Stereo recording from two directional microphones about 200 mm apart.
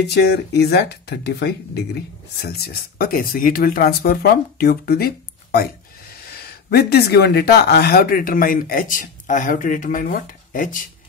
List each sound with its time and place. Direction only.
0.0 s speech: 55° left (ahead or behind)